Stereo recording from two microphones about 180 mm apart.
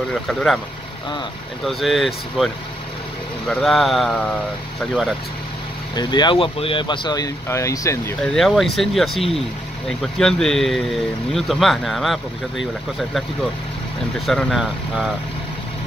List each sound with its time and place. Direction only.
0.1 s speech: centre (ahead or behind)
1.6 s speech: centre (ahead or behind)
5.9 s speech: 25° left (ahead or behind)
8.2 s speech: centre (ahead or behind)
14.1 s speech: centre (ahead or behind)